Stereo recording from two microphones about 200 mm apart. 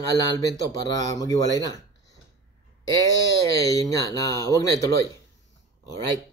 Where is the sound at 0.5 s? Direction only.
20° left (ahead or behind).